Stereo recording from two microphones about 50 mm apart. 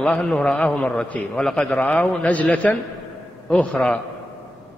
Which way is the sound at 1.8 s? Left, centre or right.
Left.